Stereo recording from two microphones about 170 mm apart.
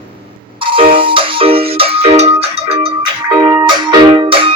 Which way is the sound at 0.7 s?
30° right (ahead or behind).